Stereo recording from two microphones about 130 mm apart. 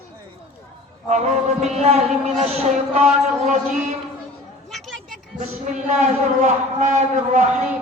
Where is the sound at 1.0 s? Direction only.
65° right (ahead or behind).